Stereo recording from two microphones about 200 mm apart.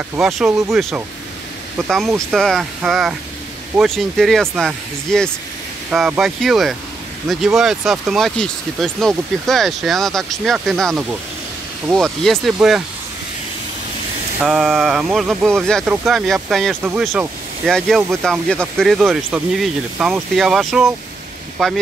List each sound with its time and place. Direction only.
0.1 s speech: centre (ahead or behind)
14.4 s speech: 5° right (ahead or behind)